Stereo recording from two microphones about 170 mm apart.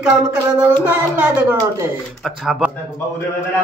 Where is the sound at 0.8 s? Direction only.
10° right (ahead or behind).